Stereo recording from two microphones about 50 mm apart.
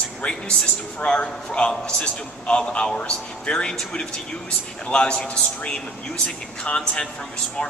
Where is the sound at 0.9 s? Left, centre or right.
Left.